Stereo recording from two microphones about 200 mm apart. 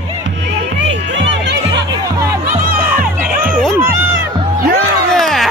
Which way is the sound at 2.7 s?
45° right (ahead or behind).